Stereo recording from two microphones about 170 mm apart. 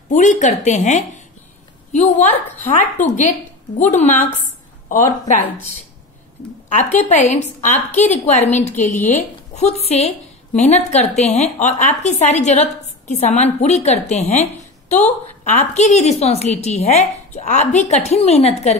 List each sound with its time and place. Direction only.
0.1 s a woman's voice: 45° left (ahead or behind)
6.9 s a woman's voice: 40° left (ahead or behind)